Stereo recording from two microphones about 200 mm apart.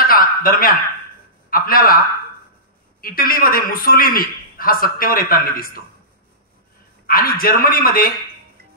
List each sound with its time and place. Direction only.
0.0 s a sound: 45° left (ahead or behind)
1.5 s a man's voice: 45° left (ahead or behind)
3.0 s a man's voice: 45° left (ahead or behind)
7.1 s a man's voice: 45° left (ahead or behind)